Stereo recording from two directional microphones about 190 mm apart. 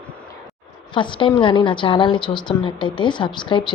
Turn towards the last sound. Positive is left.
turn(degrees=25)  # may be behind; listen again after turning